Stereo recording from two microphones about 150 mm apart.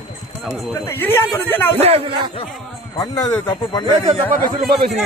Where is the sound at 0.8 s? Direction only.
15° left (ahead or behind).